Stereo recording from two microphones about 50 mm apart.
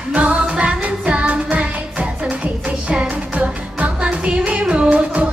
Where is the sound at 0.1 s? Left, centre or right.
Right.